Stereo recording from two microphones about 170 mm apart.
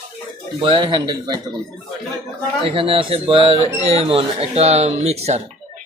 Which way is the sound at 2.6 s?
35° right (ahead or behind).